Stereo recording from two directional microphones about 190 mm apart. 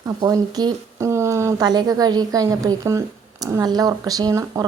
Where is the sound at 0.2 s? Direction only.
20° right (ahead or behind).